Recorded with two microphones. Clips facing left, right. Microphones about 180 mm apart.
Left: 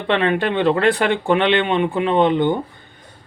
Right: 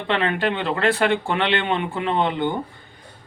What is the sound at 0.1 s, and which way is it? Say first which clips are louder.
Speech: left 4 dB; 25° left (ahead or behind).